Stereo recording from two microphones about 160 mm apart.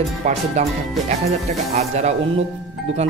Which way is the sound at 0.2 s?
45° right (ahead or behind).